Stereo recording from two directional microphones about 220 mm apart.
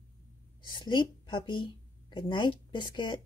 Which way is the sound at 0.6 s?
20° left (ahead or behind).